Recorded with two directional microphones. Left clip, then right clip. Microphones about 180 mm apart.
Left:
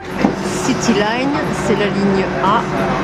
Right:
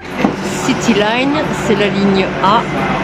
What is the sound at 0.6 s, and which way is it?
Speech, 5° right (ahead or behind).